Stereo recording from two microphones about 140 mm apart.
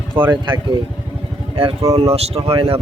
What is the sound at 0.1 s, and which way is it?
Speech, 35° right (ahead or behind).